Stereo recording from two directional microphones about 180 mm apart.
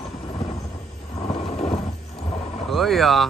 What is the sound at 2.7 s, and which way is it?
Speech, centre (ahead or behind).